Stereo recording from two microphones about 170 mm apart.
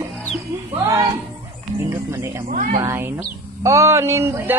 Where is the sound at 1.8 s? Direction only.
15° right (ahead or behind).